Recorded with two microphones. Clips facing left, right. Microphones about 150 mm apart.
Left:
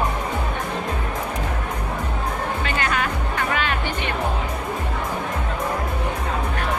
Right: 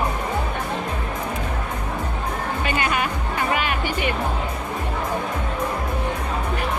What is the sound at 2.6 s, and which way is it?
Music, 10° right (ahead or behind).